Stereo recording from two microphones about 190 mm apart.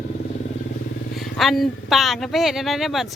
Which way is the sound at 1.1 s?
Centre (ahead or behind).